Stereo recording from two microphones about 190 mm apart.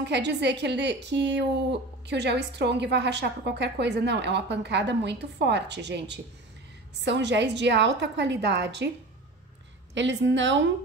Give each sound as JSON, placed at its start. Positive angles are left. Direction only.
{"t": 0.0, "sound": "a woman's voice", "side_deg": -65}
{"t": 9.9, "sound": "a woman's voice", "side_deg": -70}